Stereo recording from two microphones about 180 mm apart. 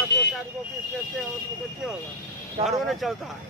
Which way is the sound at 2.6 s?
Centre (ahead or behind).